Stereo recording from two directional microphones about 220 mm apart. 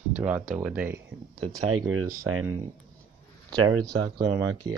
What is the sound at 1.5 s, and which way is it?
Speech, 80° right.